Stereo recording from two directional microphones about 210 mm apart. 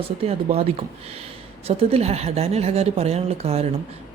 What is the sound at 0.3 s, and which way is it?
Speech, 30° right (ahead or behind).